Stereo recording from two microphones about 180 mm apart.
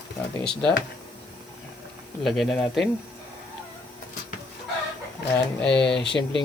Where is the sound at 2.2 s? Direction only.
Centre (ahead or behind).